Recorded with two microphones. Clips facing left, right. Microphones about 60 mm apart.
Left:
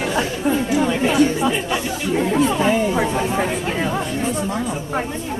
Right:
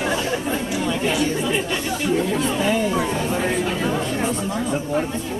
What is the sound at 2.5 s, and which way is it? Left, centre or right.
Chatter, centre.